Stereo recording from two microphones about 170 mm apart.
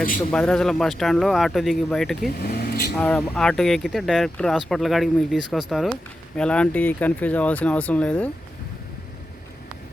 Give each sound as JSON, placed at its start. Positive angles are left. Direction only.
{"t": 0.3, "sound": "speech", "side_deg": 5}
{"t": 2.4, "sound": "speech", "side_deg": 70}
{"t": 3.0, "sound": "speech", "side_deg": 5}